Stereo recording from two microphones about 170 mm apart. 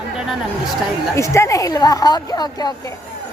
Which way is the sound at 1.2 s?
15° left (ahead or behind).